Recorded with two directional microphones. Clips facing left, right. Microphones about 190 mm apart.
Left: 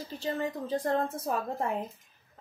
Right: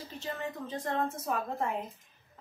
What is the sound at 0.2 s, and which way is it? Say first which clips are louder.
A woman's voice: left 5 dB; 35° left (ahead or behind).